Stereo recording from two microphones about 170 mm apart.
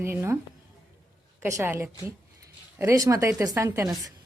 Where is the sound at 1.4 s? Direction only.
15° right (ahead or behind).